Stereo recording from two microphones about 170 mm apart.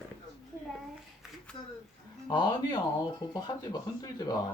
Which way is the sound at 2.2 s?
25° left (ahead or behind).